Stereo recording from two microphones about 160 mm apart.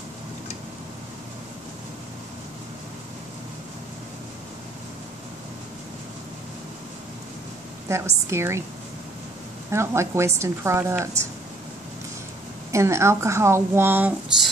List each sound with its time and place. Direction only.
7.9 s a woman's voice: 15° right (ahead or behind)
9.7 s a woman's voice: 15° right (ahead or behind)
12.7 s a woman's voice: 15° right (ahead or behind)